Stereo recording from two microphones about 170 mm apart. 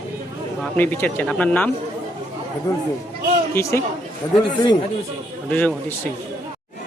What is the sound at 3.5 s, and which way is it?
Speech, 15° left (ahead or behind).